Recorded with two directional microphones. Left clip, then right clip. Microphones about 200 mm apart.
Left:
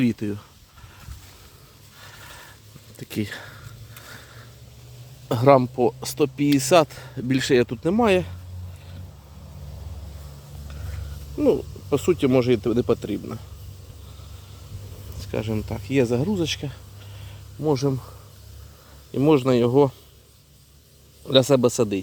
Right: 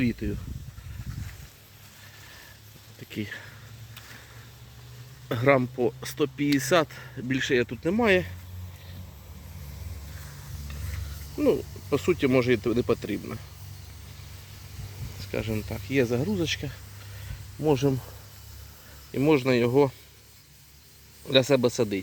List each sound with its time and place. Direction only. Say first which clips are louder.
0.0 s speech: left 5 dB; 20° left (ahead or behind)
3.0 s speech: left 5 dB; 25° left (ahead or behind)
5.3 s speech: left 6 dB; 15° left (ahead or behind)
11.3 s speech: left 4 dB; 10° left (ahead or behind)
15.2 s speech: left 3 dB; 15° left (ahead or behind)
17.8 s speech: left 1 dB; 5° right (ahead or behind)
19.1 s speech: left 4 dB; 10° left (ahead or behind)
21.2 s speech: left 4 dB; 15° left (ahead or behind)